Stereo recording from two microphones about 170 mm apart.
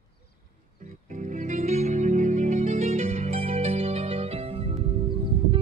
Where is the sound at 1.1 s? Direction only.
45° right (ahead or behind).